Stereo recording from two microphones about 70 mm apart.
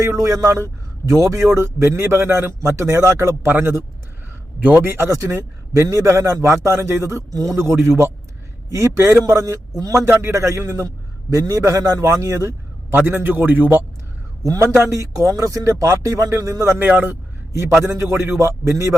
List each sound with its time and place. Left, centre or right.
0.0 s a man's voice: right
5.1 s a man's voice: right
9.9 s a man's voice: right
12.9 s a man's voice: right
14.4 s a man's voice: right
16.7 s a man's voice: right
17.8 s a man's voice: right